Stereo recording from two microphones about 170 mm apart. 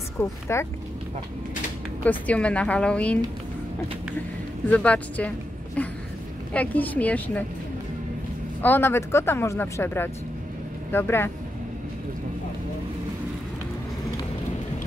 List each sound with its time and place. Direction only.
0.2 s speech: 15° left (ahead or behind)
2.0 s speech: 10° left (ahead or behind)
4.6 s speech: 10° left (ahead or behind)
8.6 s speech: 15° left (ahead or behind)